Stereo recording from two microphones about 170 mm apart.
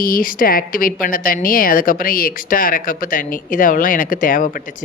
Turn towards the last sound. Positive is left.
turn(degrees=55)  # may be behind; listen again after turning